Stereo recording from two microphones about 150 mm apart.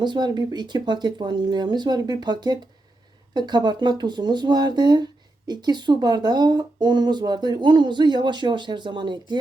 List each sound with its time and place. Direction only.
0.0 s speech: 30° right (ahead or behind)